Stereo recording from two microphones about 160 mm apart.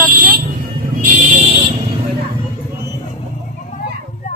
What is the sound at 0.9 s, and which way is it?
Vehicle, 55° right (ahead or behind).